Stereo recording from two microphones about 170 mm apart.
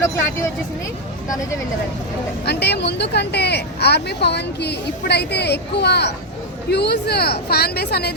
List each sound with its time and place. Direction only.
2.4 s speech: 75° left (ahead or behind)